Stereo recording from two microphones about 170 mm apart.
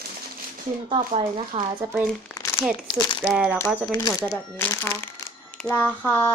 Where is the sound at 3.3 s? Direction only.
5° right (ahead or behind).